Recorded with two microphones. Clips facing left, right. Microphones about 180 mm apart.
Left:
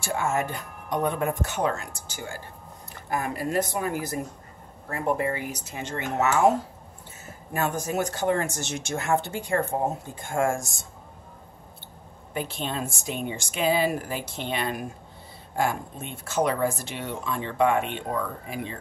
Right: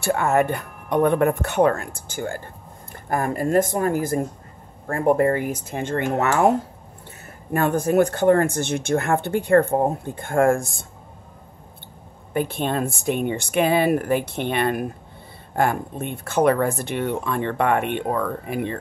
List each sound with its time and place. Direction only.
0.0 s speech: 60° right (ahead or behind)
7.5 s speech: 55° right (ahead or behind)
12.4 s speech: 55° right (ahead or behind)